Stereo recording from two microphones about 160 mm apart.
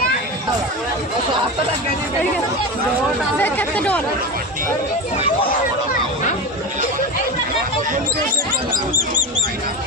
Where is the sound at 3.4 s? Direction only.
10° left (ahead or behind).